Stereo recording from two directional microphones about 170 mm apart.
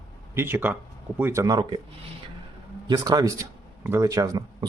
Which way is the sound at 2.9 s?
20° right (ahead or behind).